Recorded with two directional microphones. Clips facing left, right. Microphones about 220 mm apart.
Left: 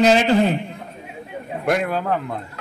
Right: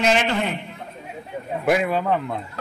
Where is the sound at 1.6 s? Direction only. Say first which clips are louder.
Right 1 dB; centre (ahead or behind).